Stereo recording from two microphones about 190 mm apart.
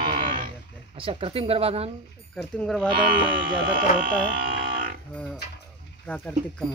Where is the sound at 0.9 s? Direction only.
30° right (ahead or behind).